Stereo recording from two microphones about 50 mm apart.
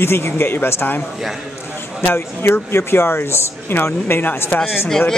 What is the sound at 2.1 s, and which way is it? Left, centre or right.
Speech, left.